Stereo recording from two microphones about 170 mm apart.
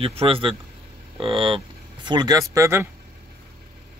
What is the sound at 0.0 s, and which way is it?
A man's voice, 35° right (ahead or behind).